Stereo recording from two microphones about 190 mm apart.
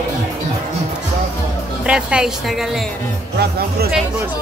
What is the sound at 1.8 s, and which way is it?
Speech, 5° right (ahead or behind).